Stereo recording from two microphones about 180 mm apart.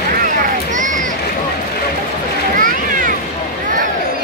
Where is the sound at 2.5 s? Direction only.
50° right (ahead or behind).